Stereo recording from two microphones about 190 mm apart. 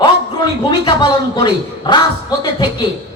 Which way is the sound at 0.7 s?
25° left (ahead or behind).